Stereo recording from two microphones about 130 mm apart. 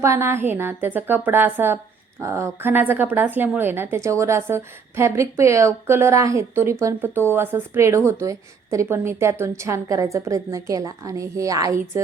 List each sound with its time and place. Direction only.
0.0 s a woman's voice: 20° right (ahead or behind)